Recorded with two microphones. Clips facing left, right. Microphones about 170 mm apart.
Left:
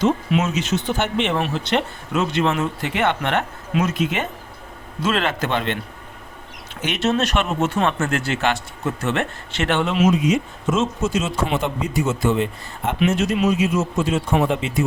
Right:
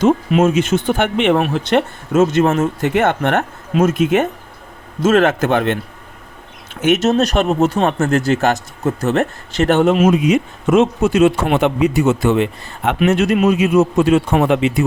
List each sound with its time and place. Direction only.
0.0 s speech: 50° right (ahead or behind)
6.8 s speech: 45° right (ahead or behind); by 14.8 s 65° right (ahead or behind)